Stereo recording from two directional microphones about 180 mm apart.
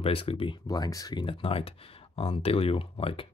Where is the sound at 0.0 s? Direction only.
30° left (ahead or behind).